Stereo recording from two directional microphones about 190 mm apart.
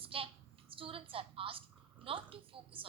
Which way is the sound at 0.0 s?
30° right (ahead or behind).